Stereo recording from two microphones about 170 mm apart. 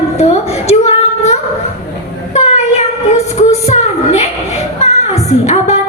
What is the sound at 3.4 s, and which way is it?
Music, 40° left (ahead or behind).